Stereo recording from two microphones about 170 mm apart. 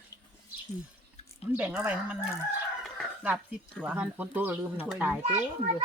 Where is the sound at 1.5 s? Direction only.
10° right (ahead or behind).